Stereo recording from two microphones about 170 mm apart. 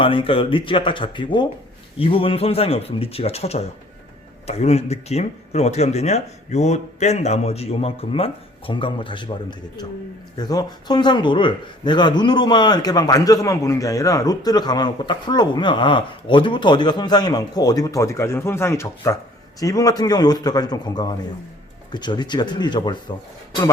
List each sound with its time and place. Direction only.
0.0 s speech: 30° left (ahead or behind)